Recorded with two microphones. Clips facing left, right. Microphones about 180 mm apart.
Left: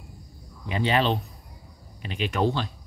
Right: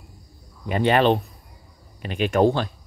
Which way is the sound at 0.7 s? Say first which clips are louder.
Right 6 dB; 55° right (ahead or behind).